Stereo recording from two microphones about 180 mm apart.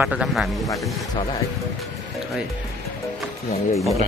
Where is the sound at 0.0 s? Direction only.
5° right (ahead or behind).